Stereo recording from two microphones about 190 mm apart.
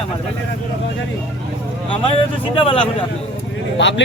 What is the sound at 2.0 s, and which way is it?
Speech, 30° left (ahead or behind).